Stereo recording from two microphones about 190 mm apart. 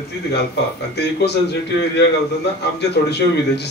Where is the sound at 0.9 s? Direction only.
60° left (ahead or behind).